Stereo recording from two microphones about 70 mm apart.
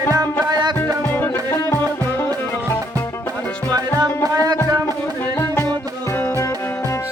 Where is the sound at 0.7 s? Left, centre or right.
Left.